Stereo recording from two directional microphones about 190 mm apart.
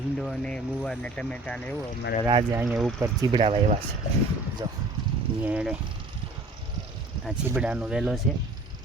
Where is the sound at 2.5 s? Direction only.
15° right (ahead or behind); by 3.8 s 30° right (ahead or behind).